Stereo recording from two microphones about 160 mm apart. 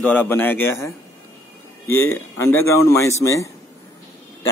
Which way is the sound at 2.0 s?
15° left (ahead or behind).